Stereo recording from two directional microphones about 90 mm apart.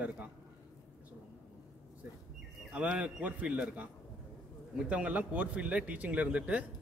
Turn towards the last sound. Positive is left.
turn(degrees=-15)  # may be behind; listen again after turning